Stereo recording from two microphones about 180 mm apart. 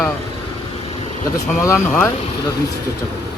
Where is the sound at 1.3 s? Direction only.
15° left (ahead or behind).